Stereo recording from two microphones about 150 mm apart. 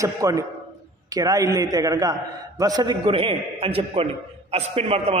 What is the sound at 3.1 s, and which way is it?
A man's voice, 35° right (ahead or behind).